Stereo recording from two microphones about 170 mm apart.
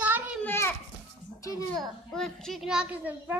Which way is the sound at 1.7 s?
5° left (ahead or behind).